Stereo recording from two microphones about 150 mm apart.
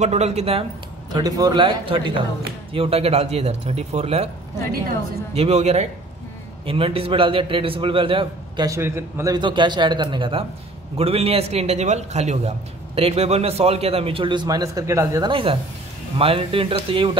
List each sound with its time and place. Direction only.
0.0 s speech: 45° right (ahead or behind)
1.1 s a man's voice: 25° right (ahead or behind); by 4.3 s 45° right (ahead or behind)
5.3 s a man's voice: 45° right (ahead or behind)
8.6 s a man's voice: 20° right (ahead or behind)
16.2 s a man's voice: 40° right (ahead or behind)